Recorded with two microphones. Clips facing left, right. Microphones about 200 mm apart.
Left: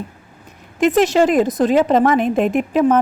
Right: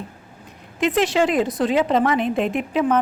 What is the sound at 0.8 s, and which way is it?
A woman's voice, 45° left (ahead or behind).